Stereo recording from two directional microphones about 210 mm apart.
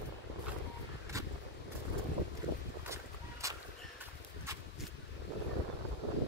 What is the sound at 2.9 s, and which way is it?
Vehicle, 15° right (ahead or behind).